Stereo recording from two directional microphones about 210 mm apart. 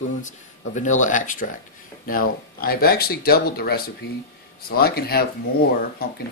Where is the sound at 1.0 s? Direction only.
40° left (ahead or behind).